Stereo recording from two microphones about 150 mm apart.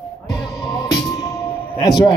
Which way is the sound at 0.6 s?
25° left (ahead or behind).